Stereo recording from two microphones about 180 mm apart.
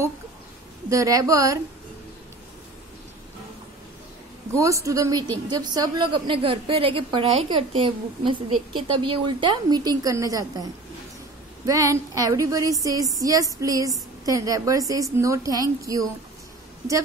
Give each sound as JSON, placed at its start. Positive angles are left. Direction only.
{"t": 0.8, "sound": "a woman's voice", "side_deg": -20}
{"t": 4.6, "sound": "a woman's voice", "side_deg": -15}